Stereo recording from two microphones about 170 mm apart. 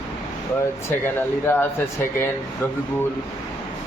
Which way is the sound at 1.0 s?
10° left (ahead or behind).